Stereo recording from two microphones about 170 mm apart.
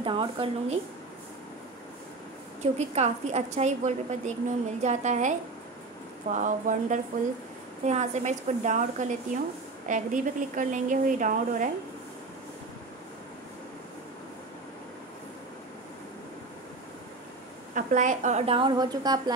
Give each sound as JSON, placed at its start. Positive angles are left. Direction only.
{"t": 0.0, "sound": "a woman's voice", "side_deg": -30}
{"t": 2.6, "sound": "a woman's voice", "side_deg": -40}
{"t": 6.3, "sound": "a woman's voice", "side_deg": -45}
{"t": 17.7, "sound": "a woman's voice", "side_deg": -45}